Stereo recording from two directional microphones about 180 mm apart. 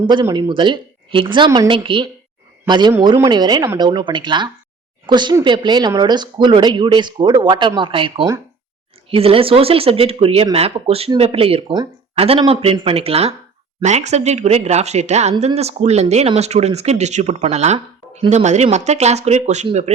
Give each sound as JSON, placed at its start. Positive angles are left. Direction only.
{"t": 0.1, "sound": "speech", "side_deg": -25}